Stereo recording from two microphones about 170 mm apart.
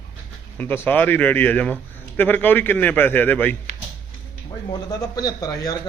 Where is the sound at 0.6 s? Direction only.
10° left (ahead or behind).